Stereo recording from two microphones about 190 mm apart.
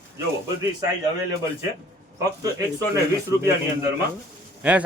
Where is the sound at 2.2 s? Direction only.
20° right (ahead or behind).